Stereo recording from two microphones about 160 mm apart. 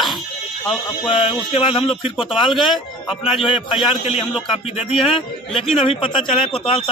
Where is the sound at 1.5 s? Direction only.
35° left (ahead or behind).